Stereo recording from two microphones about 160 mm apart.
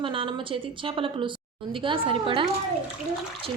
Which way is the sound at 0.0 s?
35° right (ahead or behind).